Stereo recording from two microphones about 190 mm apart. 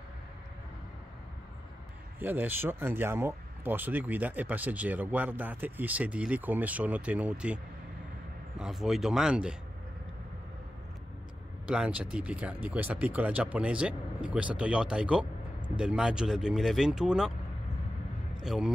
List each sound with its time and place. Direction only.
2.1 s speech: 10° right (ahead or behind)
11.6 s speech: 5° right (ahead or behind)
18.4 s a man's voice: centre (ahead or behind)